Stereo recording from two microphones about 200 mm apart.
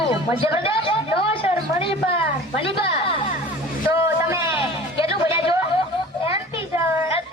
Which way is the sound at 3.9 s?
15° right (ahead or behind).